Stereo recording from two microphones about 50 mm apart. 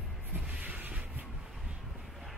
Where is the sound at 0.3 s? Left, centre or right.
Right.